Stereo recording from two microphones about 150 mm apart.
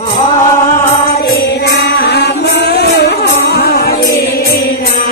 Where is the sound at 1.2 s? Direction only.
90° left.